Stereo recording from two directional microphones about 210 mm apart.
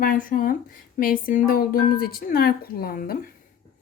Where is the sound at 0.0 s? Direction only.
40° left (ahead or behind).